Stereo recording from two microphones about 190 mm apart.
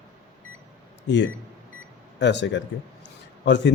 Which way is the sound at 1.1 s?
70° left (ahead or behind).